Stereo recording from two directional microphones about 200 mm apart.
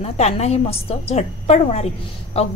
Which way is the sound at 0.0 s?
30° left (ahead or behind).